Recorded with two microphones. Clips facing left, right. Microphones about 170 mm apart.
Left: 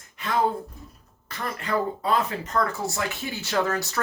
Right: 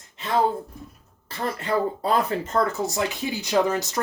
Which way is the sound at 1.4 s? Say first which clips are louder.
Right 3 dB; 30° right (ahead or behind).